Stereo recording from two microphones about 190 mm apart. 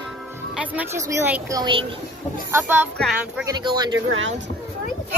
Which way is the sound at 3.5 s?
20° right (ahead or behind).